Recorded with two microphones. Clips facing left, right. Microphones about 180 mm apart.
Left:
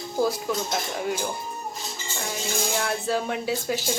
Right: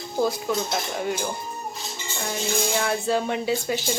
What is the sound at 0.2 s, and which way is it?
Speech, 5° left (ahead or behind).